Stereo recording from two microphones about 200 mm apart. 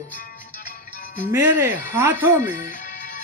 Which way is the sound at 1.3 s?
10° right (ahead or behind).